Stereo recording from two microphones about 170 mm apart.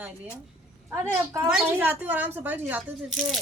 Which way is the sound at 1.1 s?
15° right (ahead or behind).